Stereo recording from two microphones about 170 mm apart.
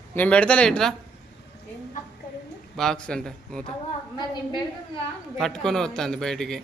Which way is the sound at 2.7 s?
5° left (ahead or behind).